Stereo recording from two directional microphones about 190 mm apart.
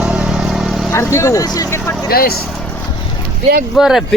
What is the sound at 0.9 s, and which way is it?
Speech, 10° left (ahead or behind).